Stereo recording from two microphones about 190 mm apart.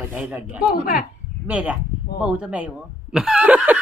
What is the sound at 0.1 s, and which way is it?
Speech, 5° right (ahead or behind).